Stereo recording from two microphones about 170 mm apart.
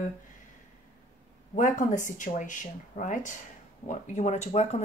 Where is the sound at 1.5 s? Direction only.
50° left (ahead or behind).